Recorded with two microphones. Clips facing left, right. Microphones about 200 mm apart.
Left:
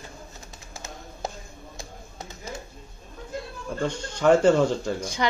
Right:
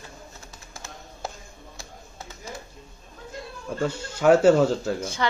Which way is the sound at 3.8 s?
5° right (ahead or behind).